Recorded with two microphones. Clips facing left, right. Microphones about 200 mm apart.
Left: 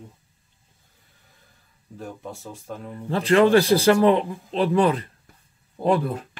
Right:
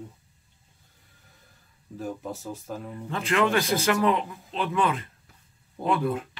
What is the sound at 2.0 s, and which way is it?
Speech, centre (ahead or behind).